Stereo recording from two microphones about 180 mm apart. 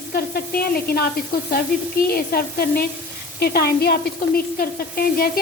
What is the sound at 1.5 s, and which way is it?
A woman's voice, 55° left (ahead or behind).